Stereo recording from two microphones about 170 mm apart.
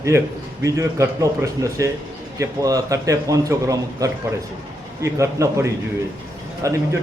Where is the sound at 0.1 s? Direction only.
15° right (ahead or behind).